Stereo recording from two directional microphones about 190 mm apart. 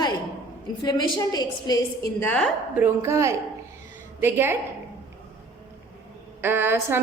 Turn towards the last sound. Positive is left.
turn(degrees=-10)  # may be behind; listen again after turning